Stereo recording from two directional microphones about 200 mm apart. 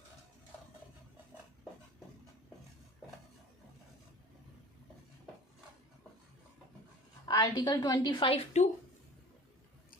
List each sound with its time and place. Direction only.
7.3 s a woman's voice: 20° left (ahead or behind)